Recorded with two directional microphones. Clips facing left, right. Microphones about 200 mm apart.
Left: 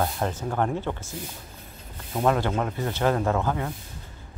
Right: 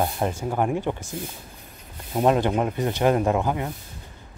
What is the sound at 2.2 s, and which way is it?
Speech, 20° right (ahead or behind).